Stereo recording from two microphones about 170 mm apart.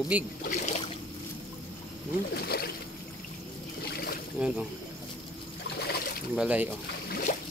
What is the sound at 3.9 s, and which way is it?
Boat, 65° left (ahead or behind).